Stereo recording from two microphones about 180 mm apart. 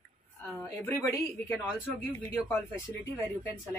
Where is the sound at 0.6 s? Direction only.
10° left (ahead or behind).